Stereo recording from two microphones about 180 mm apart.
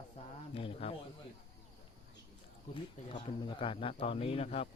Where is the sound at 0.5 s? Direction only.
30° left (ahead or behind).